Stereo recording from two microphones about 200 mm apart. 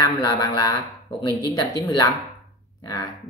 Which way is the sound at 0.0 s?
20° left (ahead or behind).